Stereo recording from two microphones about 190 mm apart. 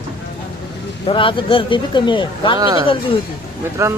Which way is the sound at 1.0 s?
25° left (ahead or behind).